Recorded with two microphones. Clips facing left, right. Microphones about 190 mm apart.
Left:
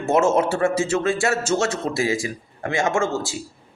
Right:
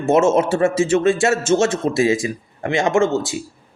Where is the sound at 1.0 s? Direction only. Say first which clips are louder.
Right 5 dB; 20° right (ahead or behind).